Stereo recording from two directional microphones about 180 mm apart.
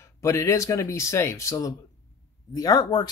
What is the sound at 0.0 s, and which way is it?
Speech, 15° left (ahead or behind).